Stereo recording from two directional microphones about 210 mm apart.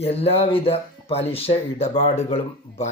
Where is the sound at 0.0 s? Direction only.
30° left (ahead or behind).